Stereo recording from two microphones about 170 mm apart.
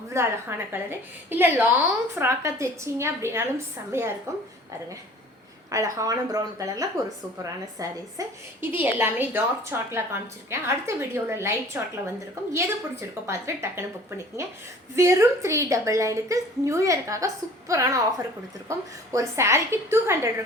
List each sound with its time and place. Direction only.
0.1 s a woman's voice: 15° right (ahead or behind)
5.7 s a woman's voice: 20° right (ahead or behind)
14.9 s a woman's voice: 15° right (ahead or behind)